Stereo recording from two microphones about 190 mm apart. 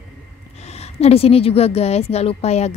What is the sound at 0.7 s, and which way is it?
A woman's voice, 35° left (ahead or behind).